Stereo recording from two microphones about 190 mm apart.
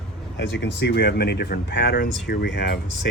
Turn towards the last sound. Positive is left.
turn(degrees=60)  # may be behind; listen again after turning